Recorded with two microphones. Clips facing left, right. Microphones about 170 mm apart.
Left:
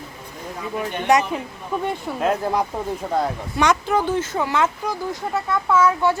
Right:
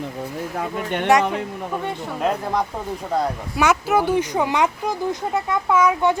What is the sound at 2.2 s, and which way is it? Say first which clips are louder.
Speech: left 1 dB; 5° left (ahead or behind).